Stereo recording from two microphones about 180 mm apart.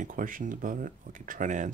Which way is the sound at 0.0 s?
50° right (ahead or behind).